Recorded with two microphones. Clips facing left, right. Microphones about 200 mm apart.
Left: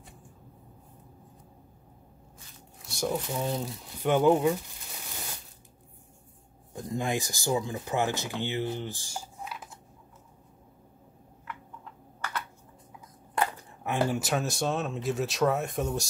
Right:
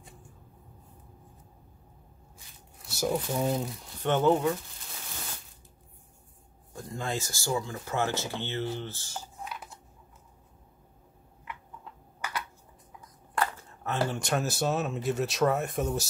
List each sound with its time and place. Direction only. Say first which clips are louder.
2.8 s speech: right 1 dB; 5° right (ahead or behind)
4.0 s speech: left 2 dB; 10° left (ahead or behind)
6.7 s speech: left 4 dB; 20° left (ahead or behind)
12.2 s computer keyboard: even; 10° right (ahead or behind)
13.3 s speech: left 1 dB; 15° left (ahead or behind); by 16.1 s centre (ahead or behind)